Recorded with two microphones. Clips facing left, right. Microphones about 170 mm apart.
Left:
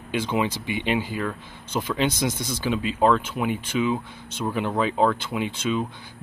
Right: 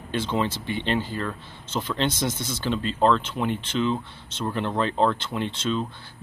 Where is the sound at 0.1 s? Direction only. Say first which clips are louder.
Left 1 dB; 10° left (ahead or behind).